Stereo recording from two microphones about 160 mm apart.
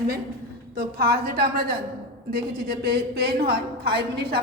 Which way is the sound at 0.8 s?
70° right (ahead or behind).